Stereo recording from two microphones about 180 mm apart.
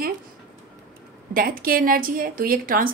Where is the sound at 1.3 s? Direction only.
50° right (ahead or behind).